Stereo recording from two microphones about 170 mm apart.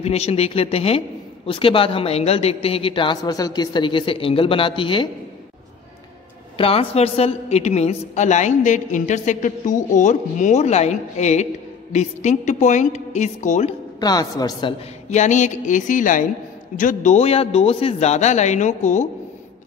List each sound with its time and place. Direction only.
0.0 s a man's voice: 40° left (ahead or behind)
6.6 s a woman's voice: 35° left (ahead or behind)
13.9 s a woman's voice: 25° left (ahead or behind)
15.0 s a woman's voice: 45° left (ahead or behind)